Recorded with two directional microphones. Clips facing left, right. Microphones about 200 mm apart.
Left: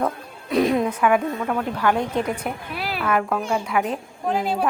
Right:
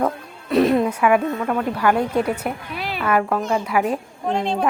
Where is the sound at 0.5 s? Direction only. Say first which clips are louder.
Right 3 dB; centre (ahead or behind).